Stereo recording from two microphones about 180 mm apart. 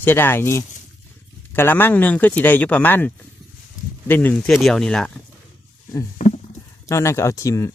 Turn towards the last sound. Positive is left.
turn(degrees=15)  # may be behind; listen again after turning